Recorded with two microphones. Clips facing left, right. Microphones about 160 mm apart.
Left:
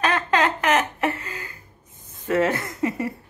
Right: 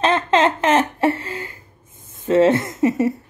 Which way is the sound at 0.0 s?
25° right (ahead or behind).